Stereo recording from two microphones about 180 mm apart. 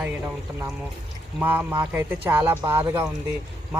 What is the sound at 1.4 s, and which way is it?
A man's voice, 10° right (ahead or behind).